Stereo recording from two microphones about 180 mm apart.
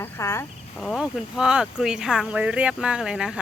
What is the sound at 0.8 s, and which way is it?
Cricket, centre (ahead or behind).